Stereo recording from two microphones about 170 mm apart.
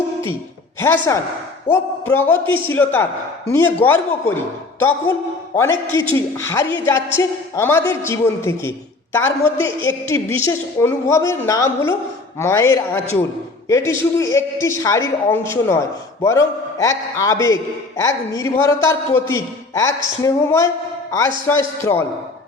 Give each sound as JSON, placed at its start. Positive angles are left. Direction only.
{"t": 0.8, "sound": "a man's voice", "side_deg": 15}